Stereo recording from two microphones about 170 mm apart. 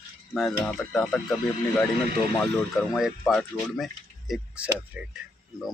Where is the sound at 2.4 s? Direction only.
Centre (ahead or behind).